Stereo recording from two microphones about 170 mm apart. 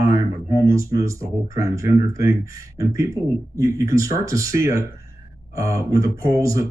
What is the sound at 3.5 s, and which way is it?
Speech, 15° right (ahead or behind).